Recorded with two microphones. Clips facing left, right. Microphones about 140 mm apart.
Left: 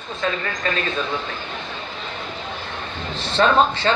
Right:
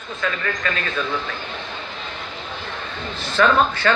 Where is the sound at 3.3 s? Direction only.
25° left (ahead or behind).